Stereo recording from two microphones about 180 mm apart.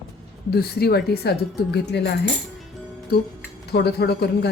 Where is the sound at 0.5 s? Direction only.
60° left (ahead or behind).